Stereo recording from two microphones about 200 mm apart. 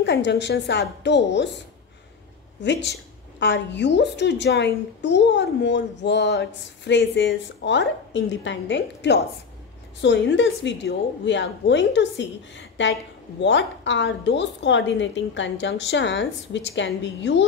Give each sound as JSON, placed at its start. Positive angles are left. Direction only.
{"t": 0.0, "sound": "a woman's voice", "side_deg": 60}
{"t": 2.6, "sound": "a woman's voice", "side_deg": 60}